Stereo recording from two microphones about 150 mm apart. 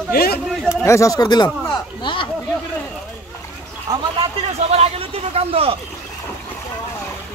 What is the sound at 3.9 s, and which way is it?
Speech, 25° right (ahead or behind).